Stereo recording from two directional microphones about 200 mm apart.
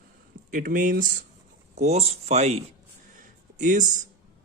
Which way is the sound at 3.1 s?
40° right (ahead or behind).